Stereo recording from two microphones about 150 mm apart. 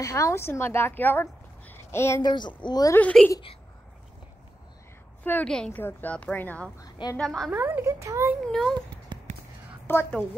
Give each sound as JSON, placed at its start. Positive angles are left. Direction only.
{"t": 0.0, "sound": "a woman's voice", "side_deg": 20}
{"t": 2.2, "sound": "speech", "side_deg": 30}
{"t": 3.0, "sound": "a woman's voice", "side_deg": 10}
{"t": 5.2, "sound": "a woman's voice", "side_deg": 10}
{"t": 6.8, "sound": "a woman's voice", "side_deg": 25}
{"t": 7.2, "sound": "a woman's voice", "side_deg": 0}
{"t": 7.5, "sound": "a woman's voice", "side_deg": -10}
{"t": 8.5, "sound": "a woman's voice", "side_deg": 0}
{"t": 9.8, "sound": "a woman's voice", "side_deg": 15}